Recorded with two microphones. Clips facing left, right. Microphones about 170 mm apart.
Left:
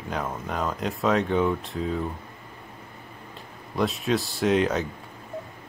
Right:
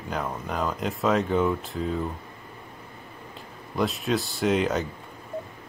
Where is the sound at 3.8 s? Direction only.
Centre (ahead or behind).